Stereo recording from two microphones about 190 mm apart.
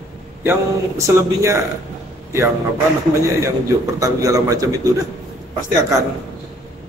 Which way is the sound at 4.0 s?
20° right (ahead or behind).